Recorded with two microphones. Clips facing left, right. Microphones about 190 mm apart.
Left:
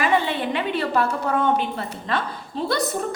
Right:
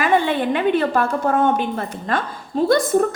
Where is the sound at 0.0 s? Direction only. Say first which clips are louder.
Right 4 dB; 50° right (ahead or behind).